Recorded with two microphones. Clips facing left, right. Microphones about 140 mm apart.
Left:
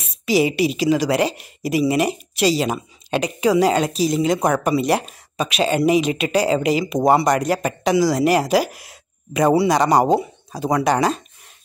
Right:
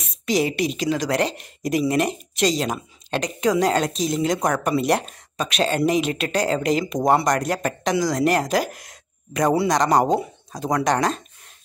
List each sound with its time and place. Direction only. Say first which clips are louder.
0.0 s speech: left 4 dB; 5° left (ahead or behind)